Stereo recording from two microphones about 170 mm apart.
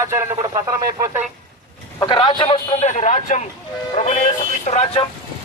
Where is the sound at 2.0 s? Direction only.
30° left (ahead or behind).